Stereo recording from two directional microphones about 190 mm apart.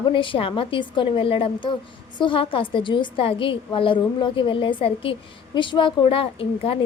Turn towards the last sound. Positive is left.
turn(degrees=30)  # may be behind; listen again after turning